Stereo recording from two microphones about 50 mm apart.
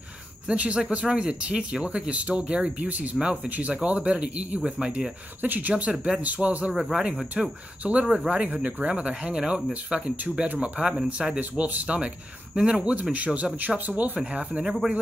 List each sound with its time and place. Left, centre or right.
0.5 s speech: right
3.7 s speech: right
5.4 s speech: right
5.9 s speech: centre
6.2 s speech: right
6.7 s speech: centre
8.3 s speech: right
14.1 s speech: right